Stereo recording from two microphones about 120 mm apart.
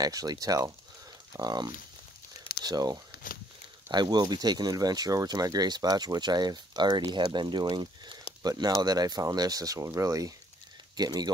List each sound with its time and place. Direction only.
0.0 s speech: 30° right (ahead or behind)